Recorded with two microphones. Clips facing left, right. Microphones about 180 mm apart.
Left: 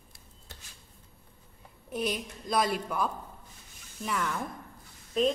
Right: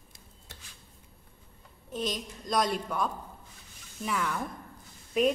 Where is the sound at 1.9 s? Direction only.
10° left (ahead or behind).